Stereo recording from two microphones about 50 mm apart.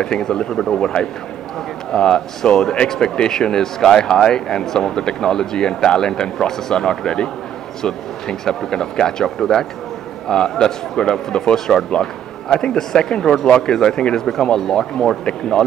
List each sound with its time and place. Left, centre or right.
0.0 s speech: centre